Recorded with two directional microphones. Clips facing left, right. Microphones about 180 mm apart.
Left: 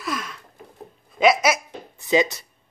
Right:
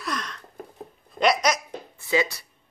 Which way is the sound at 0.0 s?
5° left (ahead or behind).